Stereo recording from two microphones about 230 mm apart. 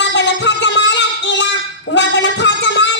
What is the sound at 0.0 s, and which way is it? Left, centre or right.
Music, left.